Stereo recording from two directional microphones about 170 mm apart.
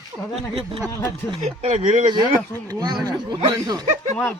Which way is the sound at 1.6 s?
45° right (ahead or behind).